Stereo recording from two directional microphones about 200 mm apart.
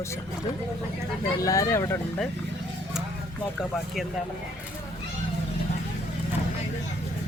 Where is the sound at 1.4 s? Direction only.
15° left (ahead or behind).